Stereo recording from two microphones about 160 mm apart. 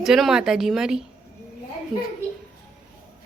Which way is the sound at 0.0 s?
Centre (ahead or behind).